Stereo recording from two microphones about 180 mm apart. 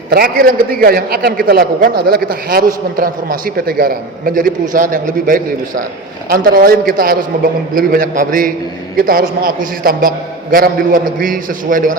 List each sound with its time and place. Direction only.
0.1 s a man's voice: 55° right (ahead or behind)